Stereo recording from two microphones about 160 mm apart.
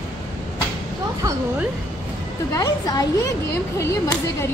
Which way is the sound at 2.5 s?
20° left (ahead or behind).